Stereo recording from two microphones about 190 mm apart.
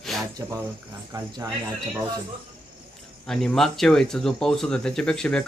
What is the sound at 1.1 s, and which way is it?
Speech, 20° right (ahead or behind).